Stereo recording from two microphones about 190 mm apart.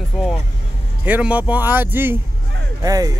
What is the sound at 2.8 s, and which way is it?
Speech, 20° right (ahead or behind).